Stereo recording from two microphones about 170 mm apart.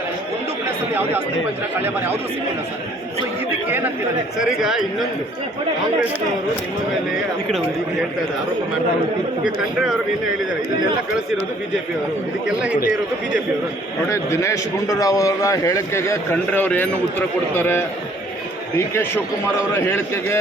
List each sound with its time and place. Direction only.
3.7 s speech: 10° right (ahead or behind)
14.1 s a man's voice: 15° left (ahead or behind)
19.7 s a man's voice: 15° left (ahead or behind)